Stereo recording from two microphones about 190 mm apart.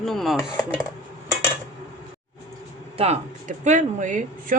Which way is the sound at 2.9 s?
35° right (ahead or behind).